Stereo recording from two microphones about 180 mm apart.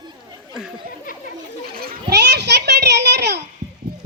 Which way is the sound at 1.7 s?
55° right (ahead or behind).